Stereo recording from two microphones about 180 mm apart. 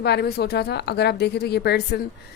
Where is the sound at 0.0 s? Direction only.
65° left (ahead or behind).